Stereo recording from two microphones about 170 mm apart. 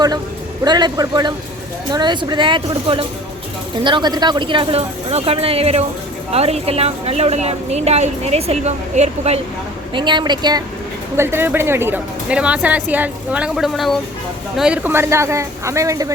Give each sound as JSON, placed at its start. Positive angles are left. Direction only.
{"t": 0.6, "sound": "a woman's voice", "side_deg": -25}
{"t": 9.9, "sound": "speech", "side_deg": -25}
{"t": 11.2, "sound": "a woman's voice", "side_deg": -15}